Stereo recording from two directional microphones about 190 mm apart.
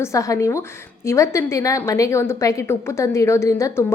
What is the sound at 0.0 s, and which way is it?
A woman's voice, 15° left (ahead or behind).